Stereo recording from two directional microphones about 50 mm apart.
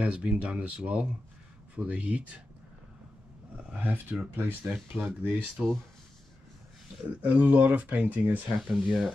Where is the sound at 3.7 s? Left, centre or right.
Right.